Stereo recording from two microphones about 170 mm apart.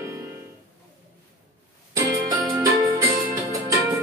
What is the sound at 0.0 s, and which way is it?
Music, 15° right (ahead or behind).